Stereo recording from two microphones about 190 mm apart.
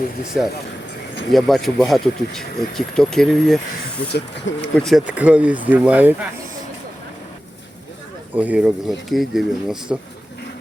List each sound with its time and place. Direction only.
0.4 s speech: centre (ahead or behind)
4.5 s speech: 75° left (ahead or behind)
4.8 s speech: centre (ahead or behind)
8.4 s speech: 5° right (ahead or behind)